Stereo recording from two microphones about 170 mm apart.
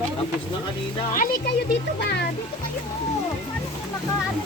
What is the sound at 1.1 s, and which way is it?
Speech, 55° left (ahead or behind).